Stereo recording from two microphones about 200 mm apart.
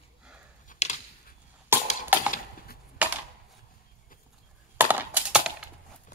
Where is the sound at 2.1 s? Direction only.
10° right (ahead or behind).